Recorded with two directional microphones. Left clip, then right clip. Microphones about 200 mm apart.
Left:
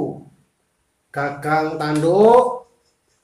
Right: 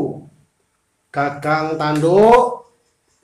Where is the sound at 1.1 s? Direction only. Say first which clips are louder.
Right 3 dB; 40° right (ahead or behind).